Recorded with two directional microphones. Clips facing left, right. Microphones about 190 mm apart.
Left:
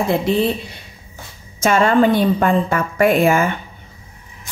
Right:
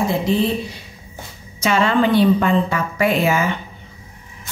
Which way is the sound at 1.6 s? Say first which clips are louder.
Left 3 dB; 45° left (ahead or behind).